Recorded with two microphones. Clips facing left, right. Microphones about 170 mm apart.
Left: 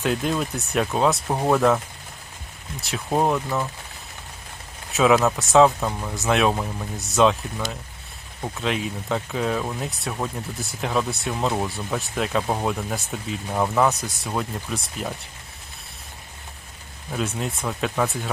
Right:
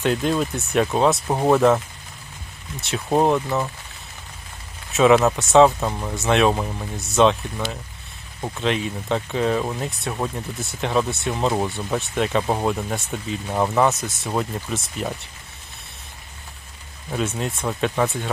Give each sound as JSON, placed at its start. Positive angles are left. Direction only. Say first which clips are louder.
{"t": 0.0, "sound": "speech", "louder": "right 3 dB", "side_deg": 0}
{"t": 2.8, "sound": "speech", "louder": "right 3 dB", "side_deg": -5}
{"t": 4.9, "sound": "speech", "louder": "right 3 dB", "side_deg": 0}
{"t": 8.4, "sound": "speech", "louder": "right 3 dB", "side_deg": 0}
{"t": 17.1, "sound": "speech", "louder": "right 2 dB", "side_deg": 0}